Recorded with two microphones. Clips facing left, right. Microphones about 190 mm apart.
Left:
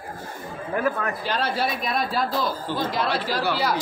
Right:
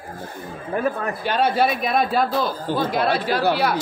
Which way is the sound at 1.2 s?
55° right (ahead or behind).